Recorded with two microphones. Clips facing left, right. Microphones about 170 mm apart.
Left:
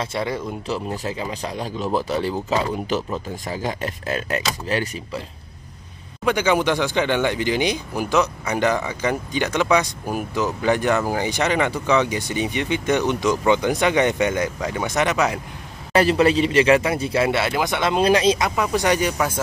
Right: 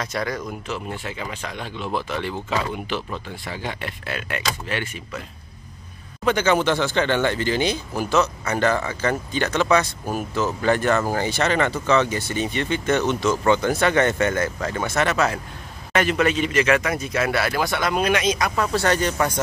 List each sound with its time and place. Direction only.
0.0 s speech: 25° left (ahead or behind)
6.2 s speech: 10° left (ahead or behind)
15.9 s speech: 35° left (ahead or behind)
18.5 s speech: 15° left (ahead or behind)